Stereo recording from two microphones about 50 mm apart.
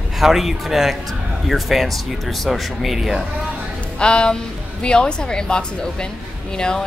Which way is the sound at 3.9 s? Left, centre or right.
Centre.